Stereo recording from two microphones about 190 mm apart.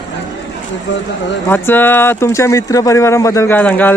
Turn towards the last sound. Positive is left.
turn(degrees=10)  # may be behind; listen again after turning